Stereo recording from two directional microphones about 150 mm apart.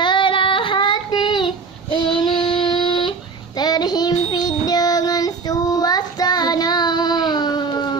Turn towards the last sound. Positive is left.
turn(degrees=30)  # may be behind; listen again after turning